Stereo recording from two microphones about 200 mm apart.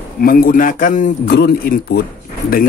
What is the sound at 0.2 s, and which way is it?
Speech, 45° left (ahead or behind).